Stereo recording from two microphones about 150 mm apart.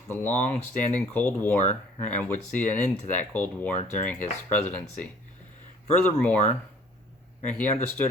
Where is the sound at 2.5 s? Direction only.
10° left (ahead or behind).